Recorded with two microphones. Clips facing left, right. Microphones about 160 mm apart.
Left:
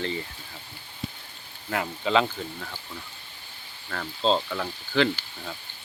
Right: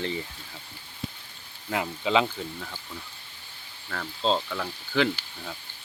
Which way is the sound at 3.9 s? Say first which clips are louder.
Left 2 dB; centre (ahead or behind).